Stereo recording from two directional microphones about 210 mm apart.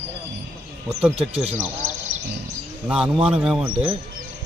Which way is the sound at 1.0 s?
Centre (ahead or behind).